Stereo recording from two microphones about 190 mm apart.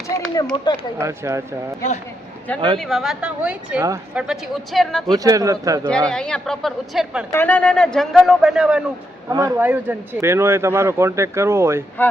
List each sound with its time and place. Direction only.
0.5 s speech: 25° left (ahead or behind)
0.9 s speech: 15° right (ahead or behind)
2.7 s a man's voice: centre (ahead or behind); by 4.2 s 15° right (ahead or behind)
4.2 s a man's voice: centre (ahead or behind)
5.1 s speech: 20° right (ahead or behind)
6.1 s a man's voice: 5° left (ahead or behind)
7.3 s a man's voice: 10° left (ahead or behind)
9.3 s speech: 20° right (ahead or behind)
12.0 s speech: 10° left (ahead or behind)